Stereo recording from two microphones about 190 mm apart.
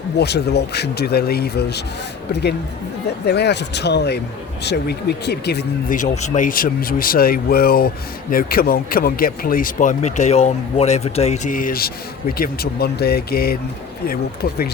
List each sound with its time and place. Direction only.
0.2 s speech: 60° left (ahead or behind)
6.0 s speech: 40° left (ahead or behind)